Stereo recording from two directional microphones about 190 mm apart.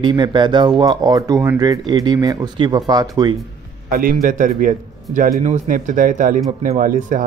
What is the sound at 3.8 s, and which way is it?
A man's voice, 50° right (ahead or behind).